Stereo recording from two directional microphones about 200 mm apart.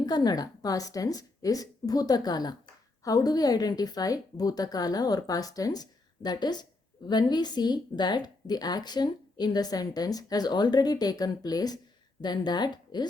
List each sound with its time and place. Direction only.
0.0 s speech: 20° left (ahead or behind)